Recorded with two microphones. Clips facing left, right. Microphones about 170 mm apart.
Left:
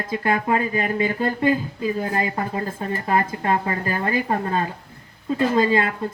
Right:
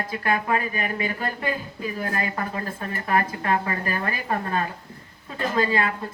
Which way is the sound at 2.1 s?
30° left (ahead or behind).